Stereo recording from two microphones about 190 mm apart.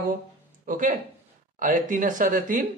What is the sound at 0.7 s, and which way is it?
A man's voice, 45° right (ahead or behind).